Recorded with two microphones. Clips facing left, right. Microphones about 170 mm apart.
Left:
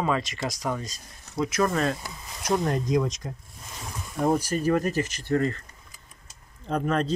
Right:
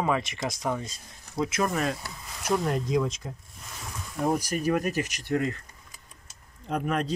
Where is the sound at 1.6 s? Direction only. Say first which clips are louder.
Left 2 dB; 10° right (ahead or behind).